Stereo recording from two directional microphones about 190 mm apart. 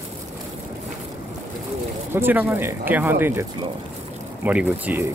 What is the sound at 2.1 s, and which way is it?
Speech, 10° right (ahead or behind).